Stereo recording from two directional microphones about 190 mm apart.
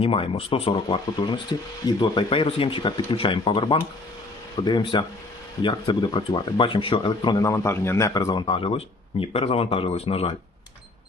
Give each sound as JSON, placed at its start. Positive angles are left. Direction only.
{"t": 0.0, "sound": "speech", "side_deg": 30}